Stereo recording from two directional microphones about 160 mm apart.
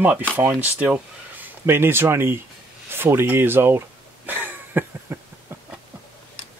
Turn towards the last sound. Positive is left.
turn(degrees=-10)  # may be behind; listen again after turning